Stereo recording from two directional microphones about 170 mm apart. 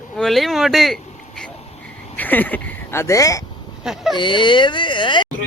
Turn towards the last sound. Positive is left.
turn(degrees=30)  # may be behind; listen again after turning